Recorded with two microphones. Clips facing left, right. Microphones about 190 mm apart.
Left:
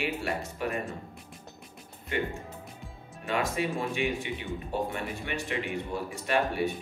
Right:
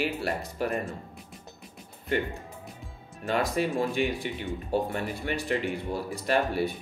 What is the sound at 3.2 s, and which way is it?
Speech, 35° right (ahead or behind).